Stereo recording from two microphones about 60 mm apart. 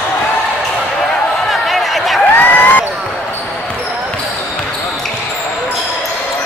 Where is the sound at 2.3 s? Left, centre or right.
Left.